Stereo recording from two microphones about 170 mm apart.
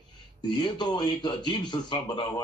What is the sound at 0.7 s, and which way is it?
Speech, 25° left (ahead or behind).